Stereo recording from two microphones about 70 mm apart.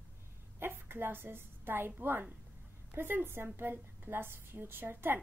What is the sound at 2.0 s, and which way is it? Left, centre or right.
A woman's voice, right.